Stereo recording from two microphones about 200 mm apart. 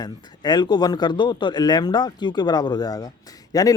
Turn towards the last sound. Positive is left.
turn(degrees=20)  # may be behind; listen again after turning